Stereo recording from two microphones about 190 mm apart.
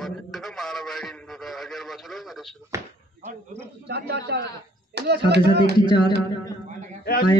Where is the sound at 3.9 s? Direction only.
60° right (ahead or behind).